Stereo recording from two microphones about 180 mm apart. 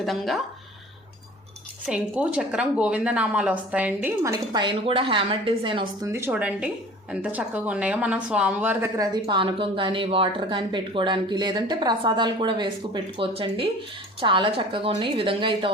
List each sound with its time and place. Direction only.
0.0 s speech: centre (ahead or behind)
1.9 s speech: 5° right (ahead or behind); by 5.8 s 30° right (ahead or behind)
6.0 s speech: 15° right (ahead or behind)
9.0 s a woman's voice: 25° right (ahead or behind)